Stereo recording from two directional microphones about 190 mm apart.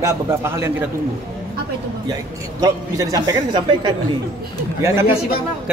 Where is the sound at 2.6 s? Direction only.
20° right (ahead or behind).